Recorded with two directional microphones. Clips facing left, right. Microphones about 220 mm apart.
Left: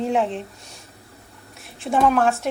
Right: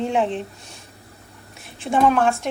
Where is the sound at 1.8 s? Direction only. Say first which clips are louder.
Right 1 dB; centre (ahead or behind).